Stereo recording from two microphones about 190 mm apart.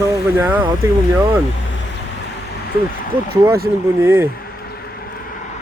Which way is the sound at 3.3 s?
55° right (ahead or behind).